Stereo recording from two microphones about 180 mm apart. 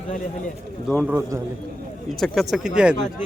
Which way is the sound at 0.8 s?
Centre (ahead or behind).